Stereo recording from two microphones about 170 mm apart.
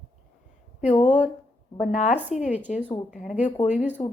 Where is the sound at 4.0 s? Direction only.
25° left (ahead or behind).